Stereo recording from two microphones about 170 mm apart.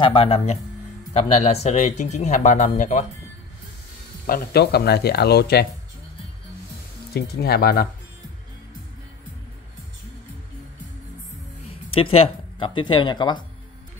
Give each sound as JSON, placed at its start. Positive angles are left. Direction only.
{"t": 0.0, "sound": "speech", "side_deg": 30}
{"t": 4.3, "sound": "speech", "side_deg": 60}
{"t": 7.2, "sound": "speech", "side_deg": 65}
{"t": 11.6, "sound": "speech", "side_deg": 35}